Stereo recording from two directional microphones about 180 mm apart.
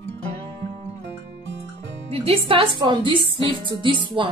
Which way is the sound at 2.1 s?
30° right (ahead or behind).